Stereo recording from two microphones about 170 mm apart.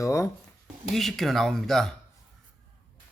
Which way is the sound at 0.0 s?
20° left (ahead or behind).